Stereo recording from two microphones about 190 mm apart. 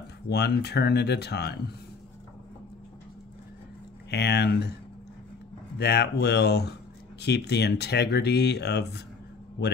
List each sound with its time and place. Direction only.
0.3 s speech: 60° left (ahead or behind)
4.1 s speech: 60° left (ahead or behind)
5.8 s speech: 60° left (ahead or behind)